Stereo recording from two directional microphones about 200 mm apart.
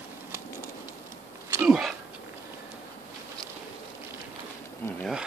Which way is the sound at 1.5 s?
5° right (ahead or behind).